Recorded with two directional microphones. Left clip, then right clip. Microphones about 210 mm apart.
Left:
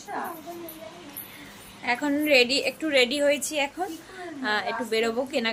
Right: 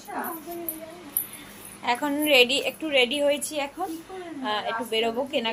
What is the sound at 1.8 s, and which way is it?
A woman's voice, 10° left (ahead or behind).